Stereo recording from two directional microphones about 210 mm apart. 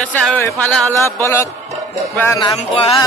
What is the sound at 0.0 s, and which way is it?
Speech, 5° left (ahead or behind).